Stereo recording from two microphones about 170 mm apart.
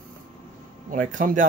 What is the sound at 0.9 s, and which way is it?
Speech, 50° right (ahead or behind).